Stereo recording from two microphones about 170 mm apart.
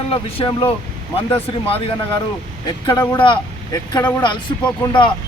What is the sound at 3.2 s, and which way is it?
Speech, 25° left (ahead or behind).